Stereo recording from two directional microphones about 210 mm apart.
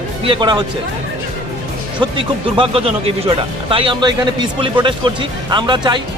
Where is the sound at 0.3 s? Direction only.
20° right (ahead or behind).